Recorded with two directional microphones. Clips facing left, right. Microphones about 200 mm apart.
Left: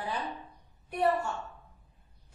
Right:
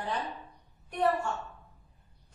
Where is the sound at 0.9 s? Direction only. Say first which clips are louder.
Even; 10° left (ahead or behind).